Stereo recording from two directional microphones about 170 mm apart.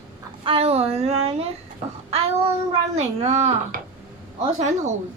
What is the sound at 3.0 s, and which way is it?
Speech, 40° right (ahead or behind).